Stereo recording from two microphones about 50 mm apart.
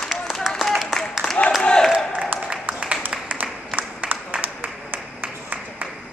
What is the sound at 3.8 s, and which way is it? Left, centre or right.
Applause, right.